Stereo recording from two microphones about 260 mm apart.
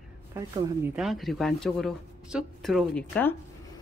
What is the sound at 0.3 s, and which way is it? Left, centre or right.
Speech, centre.